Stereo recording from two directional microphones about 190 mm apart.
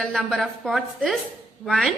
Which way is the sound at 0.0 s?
Centre (ahead or behind).